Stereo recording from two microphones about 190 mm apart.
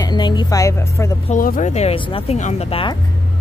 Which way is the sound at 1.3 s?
45° left (ahead or behind).